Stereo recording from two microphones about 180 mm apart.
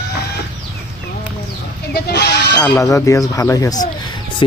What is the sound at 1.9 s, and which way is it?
Goat, 65° left (ahead or behind).